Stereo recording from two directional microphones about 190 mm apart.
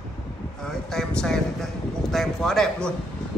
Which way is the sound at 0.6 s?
5° left (ahead or behind).